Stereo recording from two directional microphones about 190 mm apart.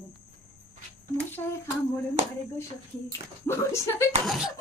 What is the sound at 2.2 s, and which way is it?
Speech, 35° right (ahead or behind).